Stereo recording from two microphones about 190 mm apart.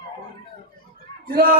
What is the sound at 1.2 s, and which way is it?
Speech, 55° right (ahead or behind).